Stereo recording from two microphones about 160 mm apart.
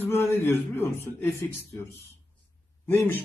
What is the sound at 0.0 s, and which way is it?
A man's voice, 15° left (ahead or behind).